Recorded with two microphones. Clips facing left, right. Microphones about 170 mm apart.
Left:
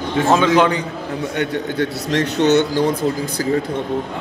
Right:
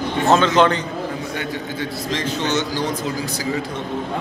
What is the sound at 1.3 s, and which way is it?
A man's voice, 65° left (ahead or behind).